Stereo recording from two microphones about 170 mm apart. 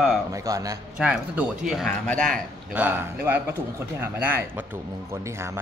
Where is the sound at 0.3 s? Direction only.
20° right (ahead or behind).